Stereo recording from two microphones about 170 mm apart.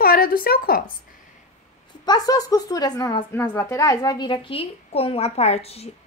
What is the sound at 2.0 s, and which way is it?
A woman's voice, 25° left (ahead or behind).